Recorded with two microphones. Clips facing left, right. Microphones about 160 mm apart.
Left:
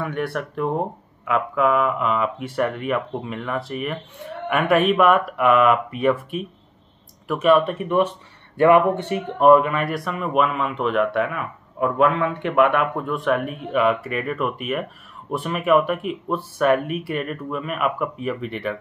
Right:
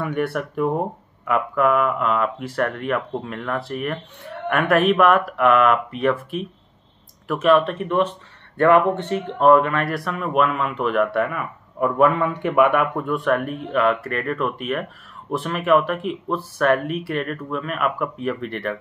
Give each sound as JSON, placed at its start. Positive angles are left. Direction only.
{"t": 0.0, "sound": "speech", "side_deg": 0}